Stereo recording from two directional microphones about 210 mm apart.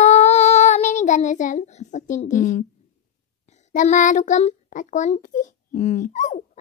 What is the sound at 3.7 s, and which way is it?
A child's voice, 35° left (ahead or behind).